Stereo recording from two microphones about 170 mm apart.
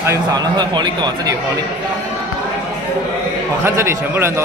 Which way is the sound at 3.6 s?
15° right (ahead or behind).